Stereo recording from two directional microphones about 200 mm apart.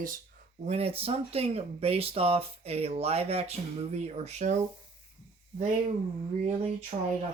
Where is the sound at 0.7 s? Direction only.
30° right (ahead or behind).